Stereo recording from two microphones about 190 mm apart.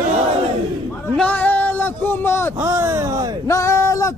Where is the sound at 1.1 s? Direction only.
5° left (ahead or behind).